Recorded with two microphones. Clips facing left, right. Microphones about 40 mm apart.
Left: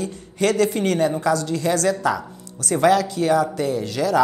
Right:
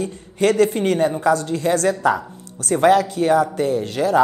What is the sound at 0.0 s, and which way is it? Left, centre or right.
Speech, right.